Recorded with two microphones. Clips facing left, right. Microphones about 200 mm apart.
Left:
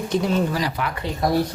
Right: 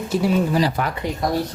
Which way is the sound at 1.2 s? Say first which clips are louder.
Left 2 dB; centre (ahead or behind).